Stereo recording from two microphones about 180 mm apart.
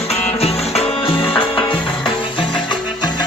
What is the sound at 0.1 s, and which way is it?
Music, 35° left (ahead or behind).